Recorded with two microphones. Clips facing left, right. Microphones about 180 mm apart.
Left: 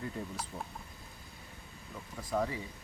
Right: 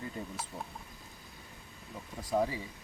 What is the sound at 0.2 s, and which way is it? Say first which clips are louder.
Frying: left 1 dB; centre (ahead or behind).